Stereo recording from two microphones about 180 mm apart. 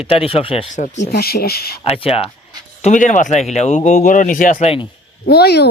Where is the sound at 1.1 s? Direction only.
60° left (ahead or behind).